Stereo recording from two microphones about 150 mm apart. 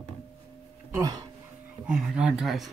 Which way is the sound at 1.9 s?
5° right (ahead or behind).